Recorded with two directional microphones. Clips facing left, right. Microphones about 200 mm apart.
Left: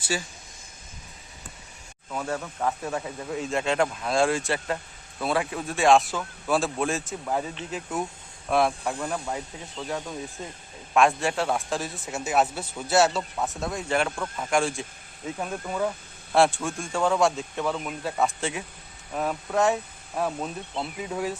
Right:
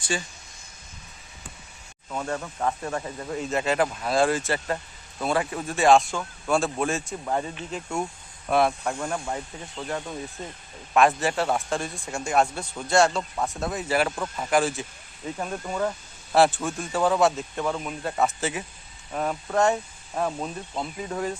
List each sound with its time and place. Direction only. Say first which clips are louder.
0.0 s speech: even; 5° left (ahead or behind)
2.0 s speech: even; 5° left (ahead or behind)
16.3 s speech: right 1 dB; centre (ahead or behind)